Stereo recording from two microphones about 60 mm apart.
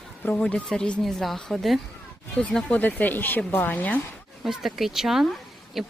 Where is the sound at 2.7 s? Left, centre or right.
Left.